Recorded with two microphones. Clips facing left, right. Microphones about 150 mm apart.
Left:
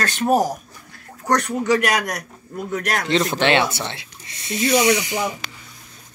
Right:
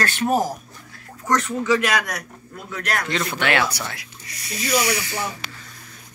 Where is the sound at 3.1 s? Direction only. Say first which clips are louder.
Left 7 dB; 25° left (ahead or behind).